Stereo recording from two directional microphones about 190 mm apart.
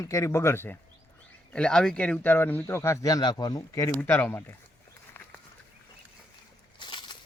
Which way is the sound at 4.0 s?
10° left (ahead or behind).